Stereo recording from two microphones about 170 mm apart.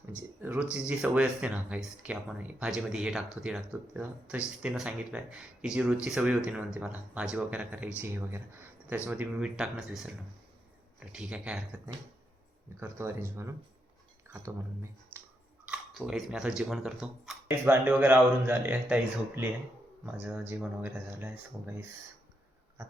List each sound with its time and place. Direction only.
0.4 s speech: 10° right (ahead or behind)
12.8 s speech: 15° right (ahead or behind)
20.1 s speech: 10° right (ahead or behind)